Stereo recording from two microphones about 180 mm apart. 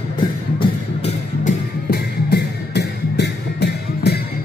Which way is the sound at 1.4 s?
60° left (ahead or behind).